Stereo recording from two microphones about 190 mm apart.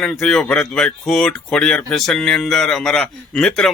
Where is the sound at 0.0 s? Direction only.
Centre (ahead or behind).